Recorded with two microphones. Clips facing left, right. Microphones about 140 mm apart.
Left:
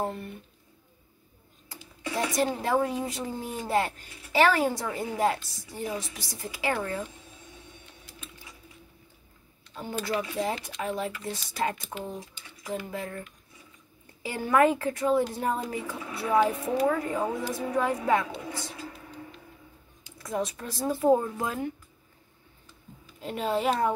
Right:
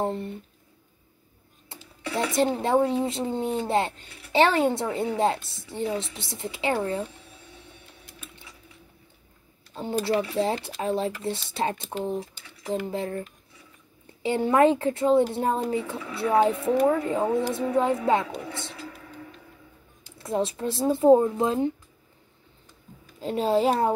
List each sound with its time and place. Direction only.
0.0 s speech: 25° right (ahead or behind)
1.7 s speech: 25° right (ahead or behind)
10.0 s speech: 30° right (ahead or behind)
20.2 s speech: 30° right (ahead or behind)
23.2 s a child's voice: 30° right (ahead or behind)